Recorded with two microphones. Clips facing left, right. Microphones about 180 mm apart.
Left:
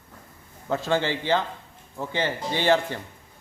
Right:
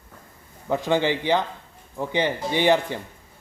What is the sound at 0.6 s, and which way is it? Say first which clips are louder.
A man's voice: right 3 dB; 15° right (ahead or behind).